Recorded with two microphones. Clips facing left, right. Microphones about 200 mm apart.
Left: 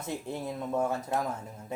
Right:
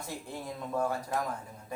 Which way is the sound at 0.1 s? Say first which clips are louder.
Left 6 dB; 25° left (ahead or behind).